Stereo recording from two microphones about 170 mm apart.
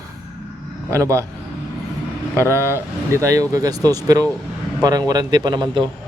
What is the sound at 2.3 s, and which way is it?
Speech, 15° left (ahead or behind).